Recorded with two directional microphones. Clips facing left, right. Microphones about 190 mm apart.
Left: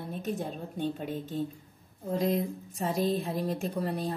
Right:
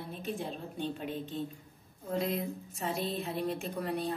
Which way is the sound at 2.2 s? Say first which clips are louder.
Left 8 dB; 40° left (ahead or behind).